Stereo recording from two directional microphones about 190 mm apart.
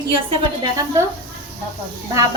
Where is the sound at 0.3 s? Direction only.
20° right (ahead or behind).